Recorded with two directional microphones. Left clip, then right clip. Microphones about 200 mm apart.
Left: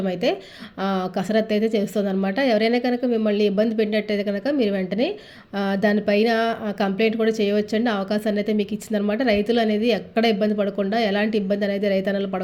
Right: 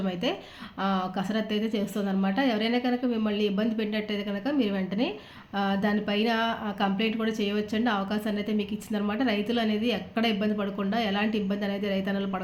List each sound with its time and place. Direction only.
0.0 s a woman's voice: 35° left (ahead or behind)